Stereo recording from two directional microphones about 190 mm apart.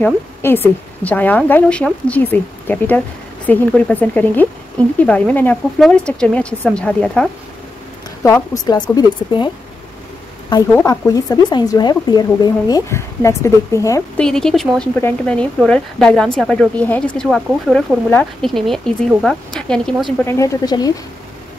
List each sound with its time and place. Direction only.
0.0 s a woman's voice: 10° left (ahead or behind)
8.6 s speech: 20° left (ahead or behind)
10.7 s speech: 15° left (ahead or behind)
14.2 s speech: 5° left (ahead or behind)
20.2 s a woman's voice: 15° left (ahead or behind)